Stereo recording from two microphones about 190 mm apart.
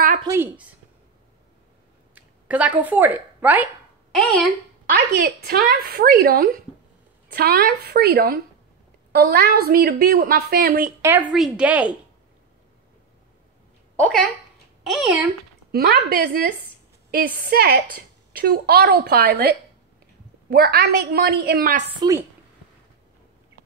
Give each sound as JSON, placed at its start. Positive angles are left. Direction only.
{"t": 0.2, "sound": "speech", "side_deg": -15}
{"t": 2.1, "sound": "a woman's voice", "side_deg": -5}
{"t": 4.2, "sound": "speech", "side_deg": 5}
{"t": 4.9, "sound": "a woman's voice", "side_deg": -60}
{"t": 11.0, "sound": "speech", "side_deg": -10}
{"t": 13.9, "sound": "a woman's voice", "side_deg": 5}
{"t": 15.7, "sound": "a woman's voice", "side_deg": -55}